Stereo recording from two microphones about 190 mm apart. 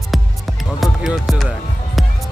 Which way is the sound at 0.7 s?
Centre (ahead or behind).